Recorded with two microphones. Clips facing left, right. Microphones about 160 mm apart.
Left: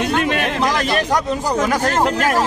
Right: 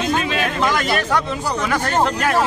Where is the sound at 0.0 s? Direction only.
60° left (ahead or behind).